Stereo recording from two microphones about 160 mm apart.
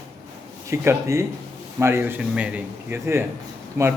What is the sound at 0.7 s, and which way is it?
A man's voice, 15° right (ahead or behind).